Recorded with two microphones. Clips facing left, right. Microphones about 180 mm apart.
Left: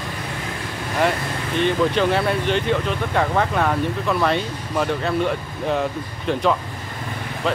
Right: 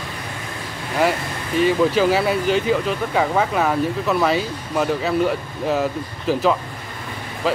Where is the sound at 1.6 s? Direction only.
5° right (ahead or behind).